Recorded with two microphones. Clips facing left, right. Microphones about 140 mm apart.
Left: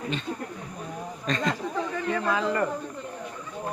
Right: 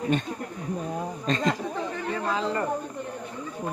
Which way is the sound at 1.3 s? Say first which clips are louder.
Right 1 dB; 35° right (ahead or behind).